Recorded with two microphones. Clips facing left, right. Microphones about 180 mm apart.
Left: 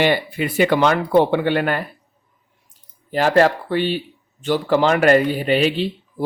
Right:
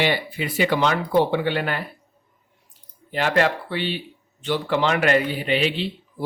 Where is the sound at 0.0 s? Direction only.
55° left (ahead or behind).